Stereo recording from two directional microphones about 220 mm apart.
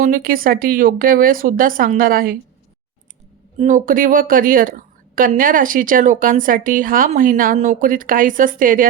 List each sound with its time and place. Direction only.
0.0 s a woman's voice: 40° right (ahead or behind)
3.6 s a woman's voice: 35° right (ahead or behind)